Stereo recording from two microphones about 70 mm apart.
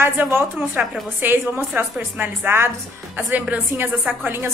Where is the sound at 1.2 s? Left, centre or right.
Right.